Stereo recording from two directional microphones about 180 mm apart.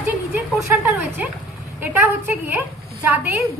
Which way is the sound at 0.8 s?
10° right (ahead or behind).